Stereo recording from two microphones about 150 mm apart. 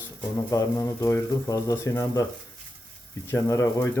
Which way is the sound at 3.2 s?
20° left (ahead or behind).